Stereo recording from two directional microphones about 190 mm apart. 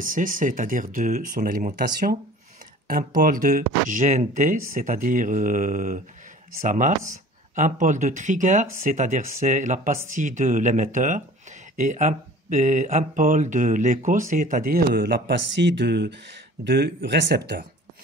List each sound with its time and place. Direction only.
0.0 s speech: 45° right (ahead or behind)
3.2 s speech: 50° right (ahead or behind)